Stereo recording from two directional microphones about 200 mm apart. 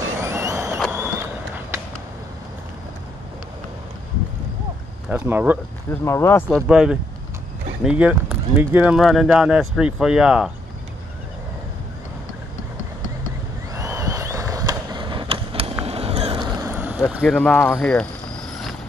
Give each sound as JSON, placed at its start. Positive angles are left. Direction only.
{"t": 0.2, "sound": "a sound", "side_deg": -15}
{"t": 5.1, "sound": "speech", "side_deg": -10}
{"t": 6.0, "sound": "speech", "side_deg": 15}
{"t": 6.7, "sound": "speech", "side_deg": -5}
{"t": 13.7, "sound": "vehicle", "side_deg": -15}
{"t": 15.8, "sound": "boat", "side_deg": -30}
{"t": 17.1, "sound": "speech", "side_deg": 0}